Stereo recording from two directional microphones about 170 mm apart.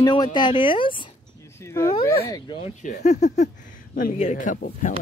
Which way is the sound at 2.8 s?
45° left (ahead or behind).